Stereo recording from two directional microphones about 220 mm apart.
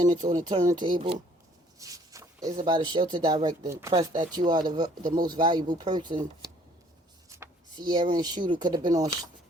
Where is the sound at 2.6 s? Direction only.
20° right (ahead or behind).